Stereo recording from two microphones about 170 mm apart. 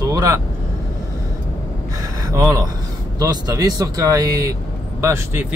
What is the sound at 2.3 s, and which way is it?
Speech, 20° right (ahead or behind).